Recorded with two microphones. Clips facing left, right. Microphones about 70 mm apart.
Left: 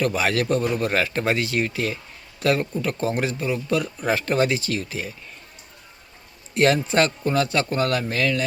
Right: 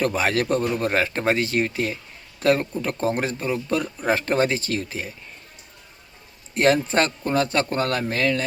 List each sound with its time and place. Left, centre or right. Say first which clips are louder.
0.0 s speech: even; right
6.5 s speech: even; right